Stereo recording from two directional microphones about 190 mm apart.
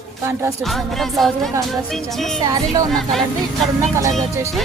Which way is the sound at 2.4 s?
20° right (ahead or behind).